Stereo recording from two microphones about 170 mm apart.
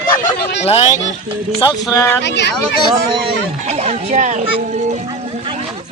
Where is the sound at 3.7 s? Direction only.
40° right (ahead or behind).